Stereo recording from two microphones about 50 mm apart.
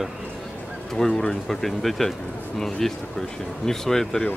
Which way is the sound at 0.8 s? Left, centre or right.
Centre.